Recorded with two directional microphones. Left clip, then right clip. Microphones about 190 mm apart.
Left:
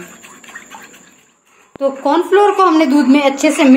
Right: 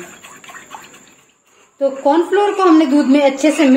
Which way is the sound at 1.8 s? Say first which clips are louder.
Even; 55° left (ahead or behind).